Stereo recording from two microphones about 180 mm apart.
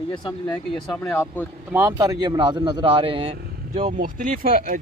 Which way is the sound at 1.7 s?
15° right (ahead or behind).